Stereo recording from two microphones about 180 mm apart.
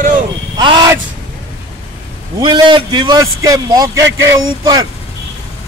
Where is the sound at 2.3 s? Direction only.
25° right (ahead or behind).